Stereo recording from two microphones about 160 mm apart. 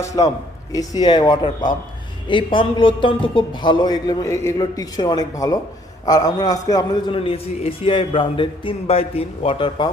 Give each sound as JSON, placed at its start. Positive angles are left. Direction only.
{"t": 0.2, "sound": "a man's voice", "side_deg": 30}